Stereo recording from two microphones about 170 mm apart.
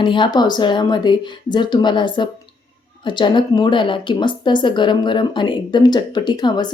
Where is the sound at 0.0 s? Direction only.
30° left (ahead or behind).